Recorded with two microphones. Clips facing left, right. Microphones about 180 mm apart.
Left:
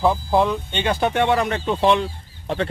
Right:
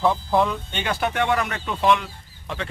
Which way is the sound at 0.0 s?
10° left (ahead or behind).